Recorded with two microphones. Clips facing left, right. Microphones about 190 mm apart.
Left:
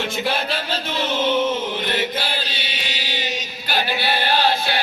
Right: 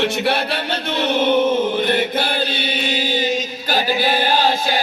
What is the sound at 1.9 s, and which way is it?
Chant, 55° right (ahead or behind).